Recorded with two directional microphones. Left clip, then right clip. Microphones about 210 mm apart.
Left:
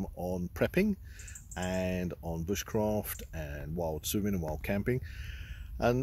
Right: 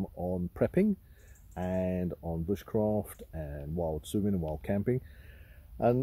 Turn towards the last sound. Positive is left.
turn(degrees=5)  # may be behind; listen again after turning